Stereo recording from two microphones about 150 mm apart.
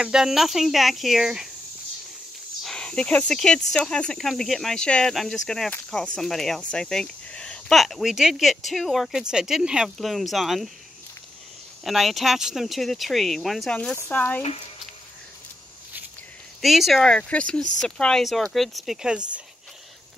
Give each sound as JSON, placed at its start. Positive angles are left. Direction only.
{"t": 0.0, "sound": "speech", "side_deg": -5}
{"t": 2.6, "sound": "speech", "side_deg": 5}
{"t": 11.8, "sound": "speech", "side_deg": 0}
{"t": 13.9, "sound": "speech", "side_deg": 15}
{"t": 16.6, "sound": "speech", "side_deg": 0}